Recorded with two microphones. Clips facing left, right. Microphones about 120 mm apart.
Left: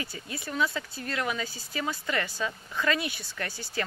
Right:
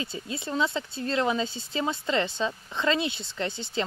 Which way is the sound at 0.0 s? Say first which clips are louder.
Right 3 dB; 25° right (ahead or behind).